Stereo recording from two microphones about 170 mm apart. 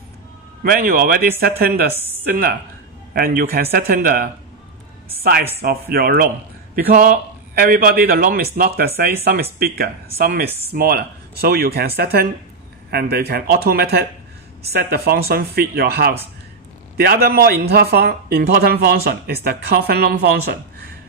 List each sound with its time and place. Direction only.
0.7 s speech: 55° right (ahead or behind)